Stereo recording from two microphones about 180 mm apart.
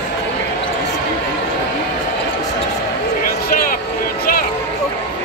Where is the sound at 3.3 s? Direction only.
55° left (ahead or behind).